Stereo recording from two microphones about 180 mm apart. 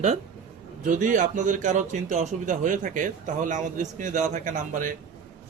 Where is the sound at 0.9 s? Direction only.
45° right (ahead or behind).